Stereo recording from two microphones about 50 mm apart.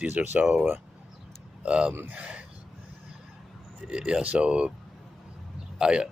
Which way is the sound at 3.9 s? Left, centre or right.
Centre.